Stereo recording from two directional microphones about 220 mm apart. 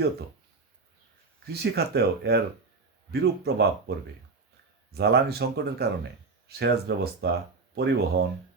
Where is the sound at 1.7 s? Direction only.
45° right (ahead or behind).